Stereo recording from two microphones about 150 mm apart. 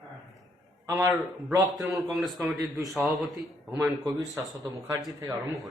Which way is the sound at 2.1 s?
Centre (ahead or behind).